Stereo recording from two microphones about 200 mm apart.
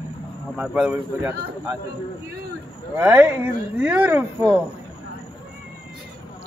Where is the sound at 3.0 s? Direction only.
10° right (ahead or behind).